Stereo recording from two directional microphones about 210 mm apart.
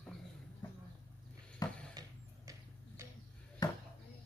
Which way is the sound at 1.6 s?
15° left (ahead or behind).